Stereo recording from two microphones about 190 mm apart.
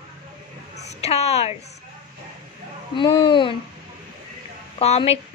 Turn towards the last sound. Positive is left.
turn(degrees=35)  # may be behind; listen again after turning